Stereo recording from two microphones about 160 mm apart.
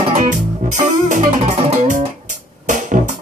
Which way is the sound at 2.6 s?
50° right (ahead or behind).